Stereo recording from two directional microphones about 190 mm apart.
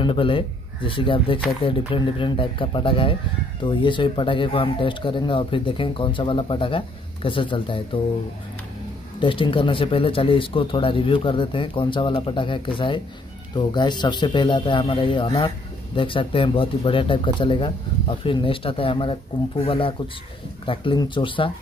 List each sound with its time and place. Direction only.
0.0 s speech: 25° left (ahead or behind)
9.2 s speech: 25° left (ahead or behind)